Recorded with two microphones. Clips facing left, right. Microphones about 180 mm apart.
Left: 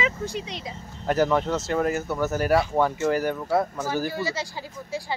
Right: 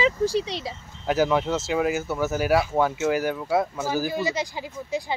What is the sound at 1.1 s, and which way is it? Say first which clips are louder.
Speech: even; 5° right (ahead or behind).